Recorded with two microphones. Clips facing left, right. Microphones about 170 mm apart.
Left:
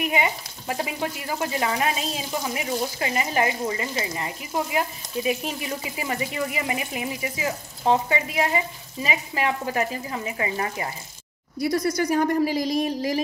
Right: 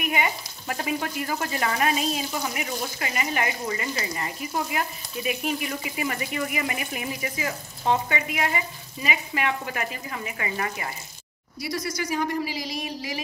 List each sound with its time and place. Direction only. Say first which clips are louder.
0.0 s speech: left 2 dB; 25° left (ahead or behind)
11.6 s a woman's voice: left 7 dB; 55° left (ahead or behind)